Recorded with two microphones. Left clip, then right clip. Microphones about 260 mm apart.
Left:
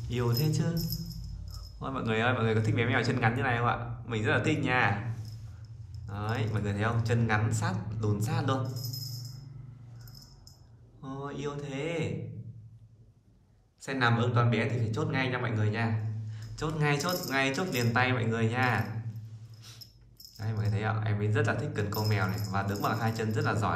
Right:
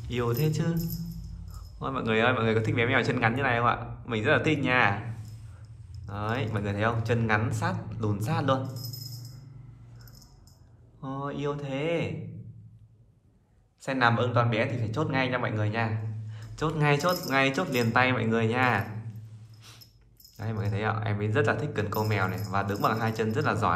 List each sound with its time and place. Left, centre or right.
0.1 s a man's voice: centre
1.8 s a man's voice: centre
6.0 s a man's voice: centre
11.0 s a man's voice: centre
13.8 s a man's voice: centre
20.3 s a man's voice: centre